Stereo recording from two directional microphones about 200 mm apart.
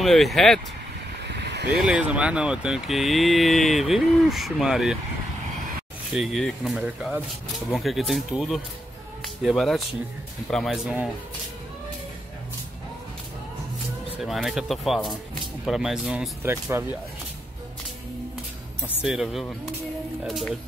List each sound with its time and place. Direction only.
0.0 s speech: centre (ahead or behind)
1.2 s vehicle: 60° right (ahead or behind)
1.9 s speech: 5° right (ahead or behind)
6.1 s speech: centre (ahead or behind)
14.1 s speech: centre (ahead or behind)
16.4 s speech: 10° right (ahead or behind)
19.0 s speech: centre (ahead or behind)